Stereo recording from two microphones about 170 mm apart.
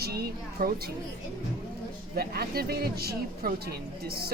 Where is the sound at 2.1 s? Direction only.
65° right (ahead or behind).